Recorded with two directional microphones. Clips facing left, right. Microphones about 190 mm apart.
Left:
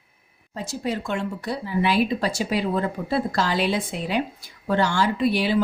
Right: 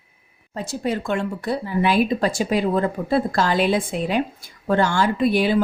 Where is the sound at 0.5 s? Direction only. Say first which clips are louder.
Right 3 dB; 55° right (ahead or behind).